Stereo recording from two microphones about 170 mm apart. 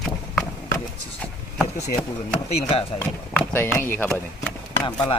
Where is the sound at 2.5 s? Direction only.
35° left (ahead or behind).